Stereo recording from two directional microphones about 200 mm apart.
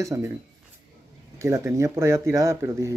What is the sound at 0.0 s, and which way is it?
Speech, 15° right (ahead or behind).